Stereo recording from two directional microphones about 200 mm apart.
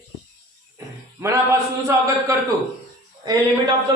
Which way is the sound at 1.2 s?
15° right (ahead or behind).